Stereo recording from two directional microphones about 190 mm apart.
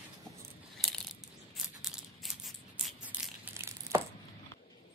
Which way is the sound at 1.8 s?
5° right (ahead or behind).